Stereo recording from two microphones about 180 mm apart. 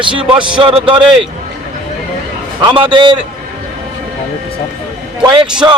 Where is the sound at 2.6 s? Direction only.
25° right (ahead or behind).